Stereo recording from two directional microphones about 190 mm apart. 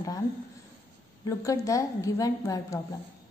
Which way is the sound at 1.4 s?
15° left (ahead or behind).